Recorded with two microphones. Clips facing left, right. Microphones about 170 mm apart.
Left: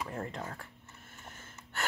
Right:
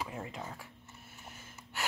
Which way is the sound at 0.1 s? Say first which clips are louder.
Left 3 dB; 10° right (ahead or behind).